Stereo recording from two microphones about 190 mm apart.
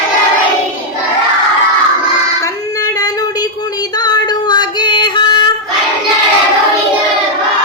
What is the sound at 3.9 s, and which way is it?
Music, 20° left (ahead or behind).